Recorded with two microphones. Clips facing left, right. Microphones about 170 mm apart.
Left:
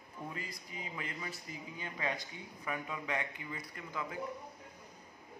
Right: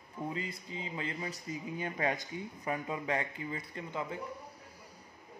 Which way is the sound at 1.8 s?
45° right (ahead or behind).